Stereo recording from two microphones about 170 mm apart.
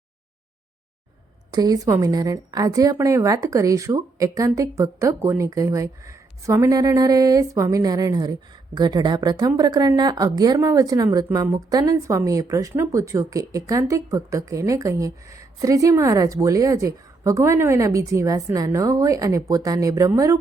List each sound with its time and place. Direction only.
1.5 s speech: 20° right (ahead or behind)